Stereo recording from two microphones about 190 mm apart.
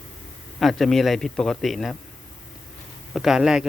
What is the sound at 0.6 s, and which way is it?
Speech, centre (ahead or behind).